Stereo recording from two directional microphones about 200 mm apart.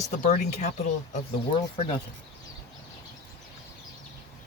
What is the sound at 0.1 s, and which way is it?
Speech, 40° left (ahead or behind).